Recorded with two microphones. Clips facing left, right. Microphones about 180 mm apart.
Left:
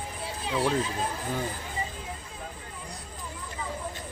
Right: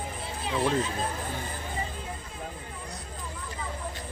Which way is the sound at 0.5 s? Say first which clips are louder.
Even; 5° left (ahead or behind).